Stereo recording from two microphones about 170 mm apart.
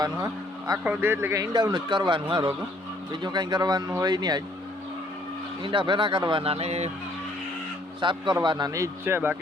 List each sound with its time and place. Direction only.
0.9 s speech: 15° right (ahead or behind)
5.6 s speech: 30° right (ahead or behind)
8.0 s speech: 25° right (ahead or behind)